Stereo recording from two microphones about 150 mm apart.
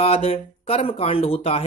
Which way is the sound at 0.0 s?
40° left (ahead or behind).